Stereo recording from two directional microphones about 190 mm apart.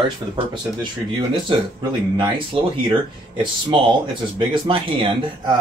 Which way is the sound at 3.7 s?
30° right (ahead or behind).